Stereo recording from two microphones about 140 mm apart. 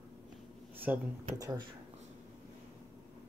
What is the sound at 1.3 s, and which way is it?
Speech, 25° right (ahead or behind).